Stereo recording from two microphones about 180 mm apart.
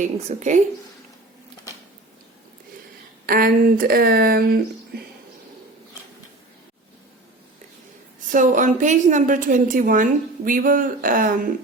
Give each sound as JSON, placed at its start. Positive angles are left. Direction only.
{"t": 0.0, "sound": "a woman's voice", "side_deg": -40}
{"t": 3.2, "sound": "speech", "side_deg": -55}
{"t": 8.3, "sound": "a woman's voice", "side_deg": -45}